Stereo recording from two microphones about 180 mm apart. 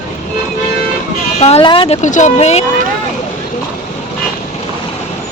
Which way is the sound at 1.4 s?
35° left (ahead or behind).